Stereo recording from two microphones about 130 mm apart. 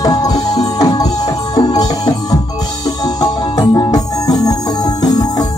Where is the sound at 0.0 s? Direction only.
30° left (ahead or behind).